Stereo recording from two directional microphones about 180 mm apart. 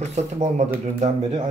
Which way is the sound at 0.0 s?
40° right (ahead or behind).